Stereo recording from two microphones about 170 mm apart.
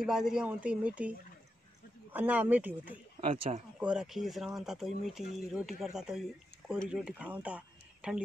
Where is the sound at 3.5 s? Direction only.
40° right (ahead or behind).